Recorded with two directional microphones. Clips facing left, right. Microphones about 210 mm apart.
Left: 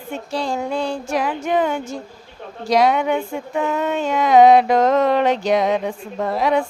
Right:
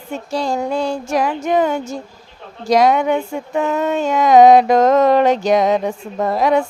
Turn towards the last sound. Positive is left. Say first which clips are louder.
# right 3 dB
turn(degrees=-45)  # may be behind; listen again after turning